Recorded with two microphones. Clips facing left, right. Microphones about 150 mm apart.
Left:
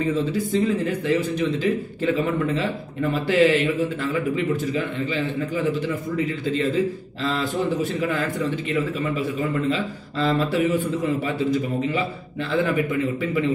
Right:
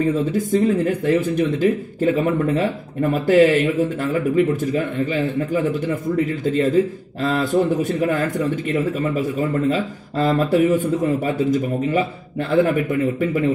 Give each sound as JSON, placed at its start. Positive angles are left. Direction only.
{"t": 0.1, "sound": "speech", "side_deg": -45}